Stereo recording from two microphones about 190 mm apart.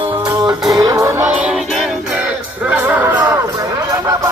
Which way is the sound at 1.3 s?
5° right (ahead or behind).